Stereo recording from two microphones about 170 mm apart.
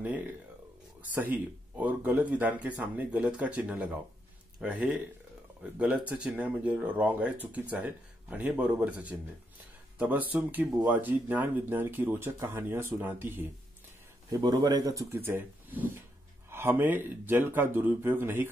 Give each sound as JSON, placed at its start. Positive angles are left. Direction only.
{"t": 1.1, "sound": "speech", "side_deg": -10}
{"t": 14.3, "sound": "speech", "side_deg": -25}